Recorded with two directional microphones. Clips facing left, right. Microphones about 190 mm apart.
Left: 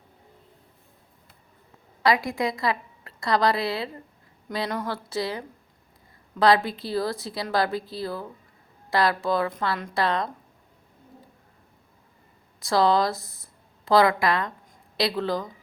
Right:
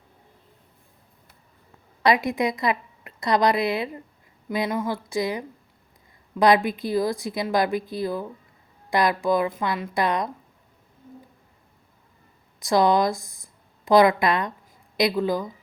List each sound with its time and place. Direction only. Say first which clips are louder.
2.0 s a woman's voice: right 2 dB; 20° right (ahead or behind)
12.5 s a woman's voice: right 2 dB; 15° right (ahead or behind)